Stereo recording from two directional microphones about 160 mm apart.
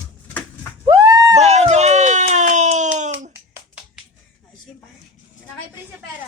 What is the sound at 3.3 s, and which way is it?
Clapping, 15° right (ahead or behind).